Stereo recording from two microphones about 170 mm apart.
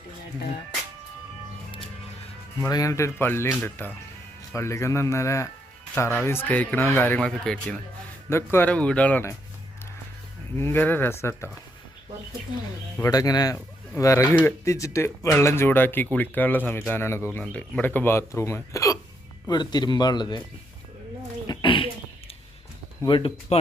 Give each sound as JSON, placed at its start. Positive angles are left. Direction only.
{"t": 2.6, "sound": "speech", "side_deg": 20}
{"t": 8.3, "sound": "speech", "side_deg": 15}
{"t": 10.6, "sound": "speech", "side_deg": 10}
{"t": 13.0, "sound": "speech", "side_deg": 20}
{"t": 21.4, "sound": "a sound", "side_deg": 25}
{"t": 23.0, "sound": "speech", "side_deg": 30}